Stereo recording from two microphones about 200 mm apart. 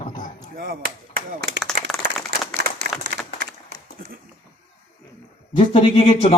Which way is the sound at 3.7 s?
50° right (ahead or behind).